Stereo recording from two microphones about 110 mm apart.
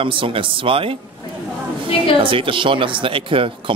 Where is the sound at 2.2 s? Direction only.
50° right (ahead or behind).